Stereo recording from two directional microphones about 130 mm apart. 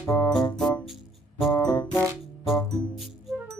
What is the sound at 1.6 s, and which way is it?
Music, 25° left (ahead or behind).